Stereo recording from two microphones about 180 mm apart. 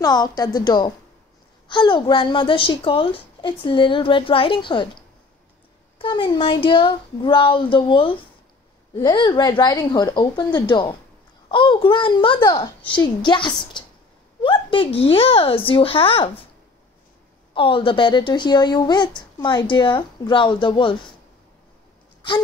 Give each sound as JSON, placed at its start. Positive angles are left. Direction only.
{"t": 0.0, "sound": "a woman's voice", "side_deg": 20}
{"t": 5.9, "sound": "a woman's voice", "side_deg": 25}
{"t": 13.7, "sound": "a sound", "side_deg": 25}
{"t": 14.4, "sound": "speech", "side_deg": 30}
{"t": 17.6, "sound": "a woman's voice", "side_deg": 30}